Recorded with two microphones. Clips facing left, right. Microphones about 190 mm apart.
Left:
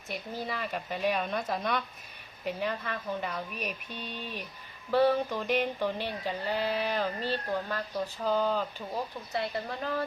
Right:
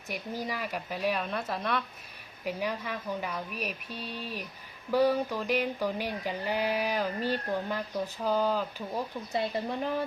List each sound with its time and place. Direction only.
0.1 s speech: 10° right (ahead or behind)
9.3 s speech: 20° right (ahead or behind)